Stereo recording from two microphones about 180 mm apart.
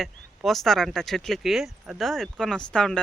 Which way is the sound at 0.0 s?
Centre (ahead or behind).